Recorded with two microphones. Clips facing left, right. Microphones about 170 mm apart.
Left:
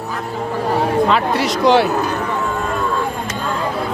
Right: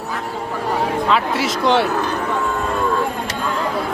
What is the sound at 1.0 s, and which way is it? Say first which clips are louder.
Speech: left 2 dB; centre (ahead or behind).